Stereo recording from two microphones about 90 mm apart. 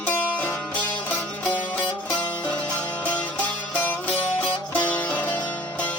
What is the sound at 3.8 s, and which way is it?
Music, 20° left (ahead or behind).